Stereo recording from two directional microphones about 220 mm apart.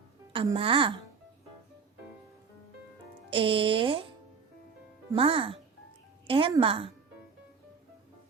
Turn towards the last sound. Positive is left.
turn(degrees=-25)  # may be behind; listen again after turning